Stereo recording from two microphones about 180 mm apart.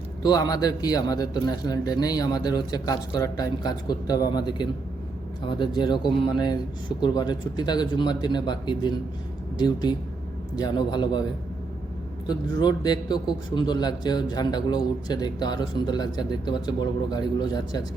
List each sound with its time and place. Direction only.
0.2 s a man's voice: 20° left (ahead or behind)
12.3 s a man's voice: 20° left (ahead or behind)